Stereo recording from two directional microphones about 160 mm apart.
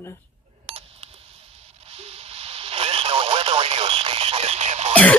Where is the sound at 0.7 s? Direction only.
40° right (ahead or behind).